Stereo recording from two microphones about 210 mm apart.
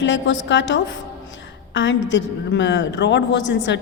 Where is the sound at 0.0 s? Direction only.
60° left (ahead or behind).